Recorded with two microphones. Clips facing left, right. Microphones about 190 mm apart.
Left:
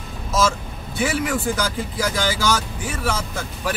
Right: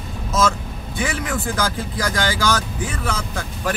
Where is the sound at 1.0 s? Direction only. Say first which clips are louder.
Left 3 dB; 5° left (ahead or behind).